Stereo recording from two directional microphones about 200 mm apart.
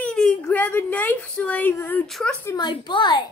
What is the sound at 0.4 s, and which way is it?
Speech, 10° left (ahead or behind).